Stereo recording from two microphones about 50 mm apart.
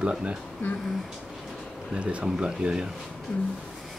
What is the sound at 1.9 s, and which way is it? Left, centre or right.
Speech, right.